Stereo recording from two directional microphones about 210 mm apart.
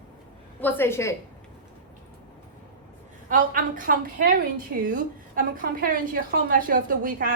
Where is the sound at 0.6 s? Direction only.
10° left (ahead or behind).